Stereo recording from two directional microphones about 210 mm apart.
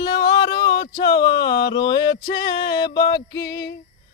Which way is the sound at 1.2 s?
55° left (ahead or behind).